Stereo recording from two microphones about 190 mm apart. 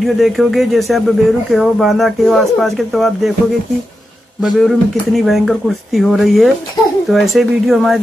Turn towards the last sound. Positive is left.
turn(degrees=0)  # may be behind; listen again after turning